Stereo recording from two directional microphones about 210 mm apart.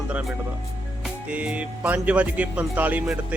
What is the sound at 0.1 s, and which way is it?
Speech, 5° right (ahead or behind).